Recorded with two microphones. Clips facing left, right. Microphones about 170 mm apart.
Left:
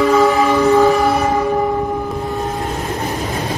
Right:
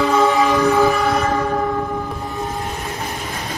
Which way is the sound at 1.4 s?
15° left (ahead or behind).